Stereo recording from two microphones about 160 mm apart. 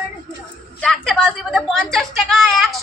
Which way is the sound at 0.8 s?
5° left (ahead or behind).